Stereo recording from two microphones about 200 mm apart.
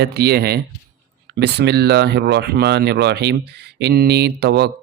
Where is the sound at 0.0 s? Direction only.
50° right (ahead or behind).